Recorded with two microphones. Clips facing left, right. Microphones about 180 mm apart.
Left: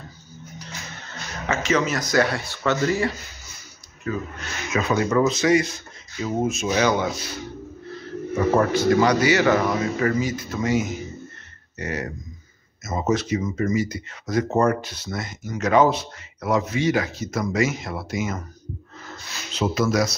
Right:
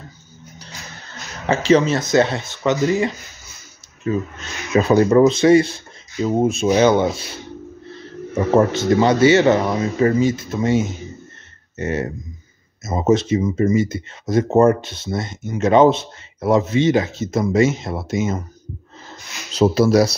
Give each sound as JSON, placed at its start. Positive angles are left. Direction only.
{"t": 1.5, "sound": "speech", "side_deg": -30}
{"t": 8.5, "sound": "speech", "side_deg": -25}